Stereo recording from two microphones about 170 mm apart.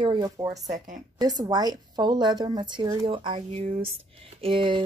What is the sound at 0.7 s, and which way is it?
Speech, 45° right (ahead or behind).